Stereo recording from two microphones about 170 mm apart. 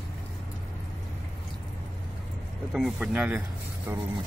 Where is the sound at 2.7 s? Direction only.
5° right (ahead or behind).